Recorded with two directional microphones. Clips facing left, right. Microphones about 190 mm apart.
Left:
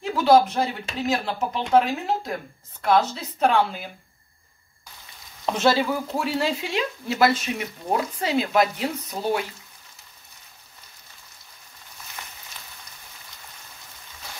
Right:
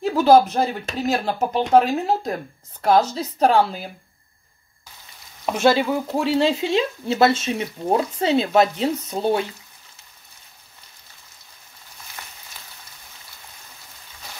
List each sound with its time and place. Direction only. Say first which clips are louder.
0.0 s a sound: right 3 dB; 40° right (ahead or behind)
0.8 s speech: right 3 dB; 40° right (ahead or behind)
5.4 s speech: right 3 dB; 10° right (ahead or behind); by 9.5 s 25° right (ahead or behind)